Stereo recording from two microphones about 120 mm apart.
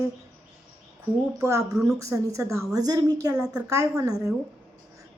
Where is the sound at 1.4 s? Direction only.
25° right (ahead or behind).